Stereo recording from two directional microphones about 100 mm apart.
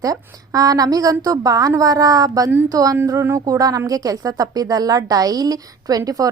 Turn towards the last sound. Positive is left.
turn(degrees=-35)  # may be behind; listen again after turning